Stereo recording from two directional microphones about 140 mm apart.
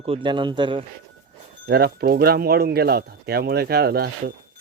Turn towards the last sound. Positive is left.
turn(degrees=-90)